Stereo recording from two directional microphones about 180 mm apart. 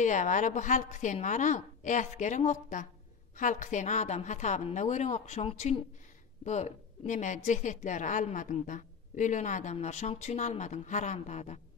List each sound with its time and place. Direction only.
0.0 s a woman's voice: 45° left (ahead or behind)